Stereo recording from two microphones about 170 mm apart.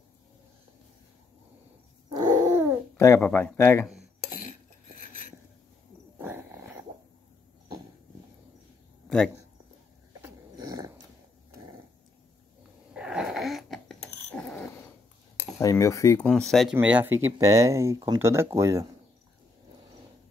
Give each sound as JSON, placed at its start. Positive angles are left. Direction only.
{"t": 2.0, "sound": "a sound", "side_deg": -20}
{"t": 3.2, "sound": "speech", "side_deg": 5}
{"t": 4.4, "sound": "cutlery", "side_deg": 55}
{"t": 6.1, "sound": "dog", "side_deg": -10}
{"t": 10.2, "sound": "dog", "side_deg": -20}
{"t": 12.9, "sound": "a sound", "side_deg": -5}
{"t": 15.6, "sound": "cutlery", "side_deg": 20}
{"t": 16.2, "sound": "speech", "side_deg": 5}
{"t": 16.7, "sound": "speech", "side_deg": -10}